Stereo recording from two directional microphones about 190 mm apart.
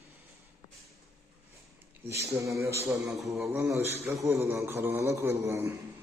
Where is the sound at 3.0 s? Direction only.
Centre (ahead or behind).